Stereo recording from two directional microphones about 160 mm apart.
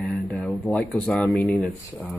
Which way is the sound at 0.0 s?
5° left (ahead or behind).